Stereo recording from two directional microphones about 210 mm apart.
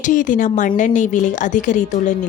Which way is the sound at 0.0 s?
40° left (ahead or behind).